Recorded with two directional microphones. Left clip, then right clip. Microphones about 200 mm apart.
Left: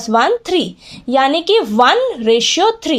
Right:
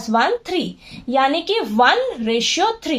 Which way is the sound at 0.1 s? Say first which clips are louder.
Left 5 dB; 40° left (ahead or behind).